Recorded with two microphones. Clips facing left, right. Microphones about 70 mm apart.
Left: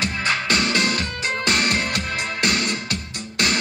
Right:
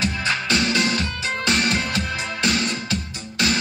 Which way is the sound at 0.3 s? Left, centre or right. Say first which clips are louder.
Left 1 dB; left.